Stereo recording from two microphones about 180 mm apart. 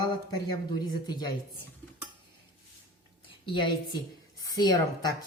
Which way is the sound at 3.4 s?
30° left (ahead or behind).